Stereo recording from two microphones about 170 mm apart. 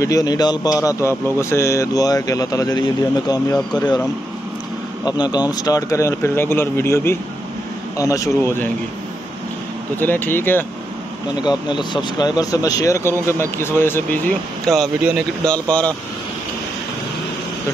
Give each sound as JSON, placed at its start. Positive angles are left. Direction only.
{"t": 0.0, "sound": "speech", "side_deg": 20}
{"t": 5.0, "sound": "speech", "side_deg": 25}
{"t": 9.9, "sound": "speech", "side_deg": 10}
{"t": 11.4, "sound": "speech", "side_deg": 25}
{"t": 14.7, "sound": "speech", "side_deg": 0}